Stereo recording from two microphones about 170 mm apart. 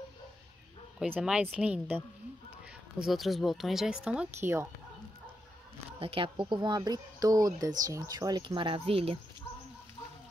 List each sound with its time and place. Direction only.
0.9 s speech: 5° right (ahead or behind)
3.0 s speech: centre (ahead or behind)
5.9 s speech: 35° right (ahead or behind)